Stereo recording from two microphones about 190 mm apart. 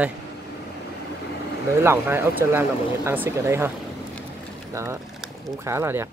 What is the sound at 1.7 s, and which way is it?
Speech, 15° right (ahead or behind).